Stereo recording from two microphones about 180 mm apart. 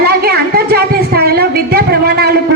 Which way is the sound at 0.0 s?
60° right (ahead or behind).